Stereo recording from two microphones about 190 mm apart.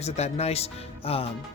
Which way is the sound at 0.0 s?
35° left (ahead or behind).